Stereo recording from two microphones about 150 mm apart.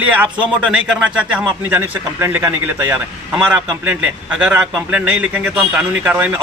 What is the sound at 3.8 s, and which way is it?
A man's voice, 5° right (ahead or behind).